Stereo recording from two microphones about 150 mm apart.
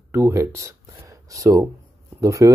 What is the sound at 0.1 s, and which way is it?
Speech, 15° right (ahead or behind).